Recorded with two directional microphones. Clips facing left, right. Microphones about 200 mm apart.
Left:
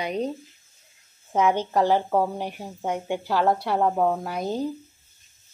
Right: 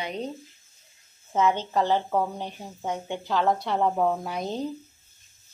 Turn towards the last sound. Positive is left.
turn(degrees=5)  # may be behind; listen again after turning